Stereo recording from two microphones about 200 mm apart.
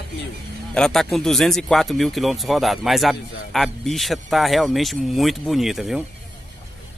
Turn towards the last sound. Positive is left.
turn(degrees=0)  # may be behind; listen again after turning